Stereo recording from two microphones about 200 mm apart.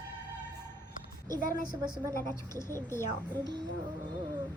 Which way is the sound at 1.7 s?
20° right (ahead or behind).